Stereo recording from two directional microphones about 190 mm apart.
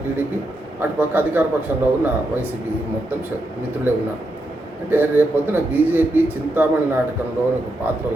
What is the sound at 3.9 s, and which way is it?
A man's voice, 10° right (ahead or behind).